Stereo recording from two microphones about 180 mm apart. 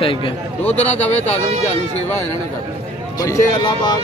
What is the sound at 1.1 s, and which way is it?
Speech, 40° left (ahead or behind).